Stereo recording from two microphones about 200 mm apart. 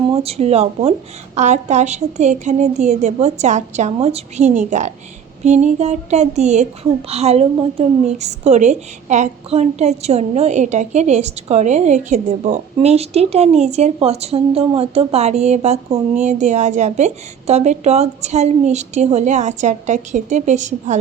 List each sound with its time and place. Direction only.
0.2 s a woman's voice: 30° right (ahead or behind)